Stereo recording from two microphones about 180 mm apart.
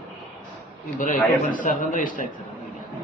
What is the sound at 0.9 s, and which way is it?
A man's voice, 45° left (ahead or behind).